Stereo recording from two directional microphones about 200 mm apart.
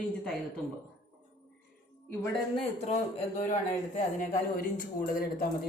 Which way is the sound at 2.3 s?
30° left (ahead or behind).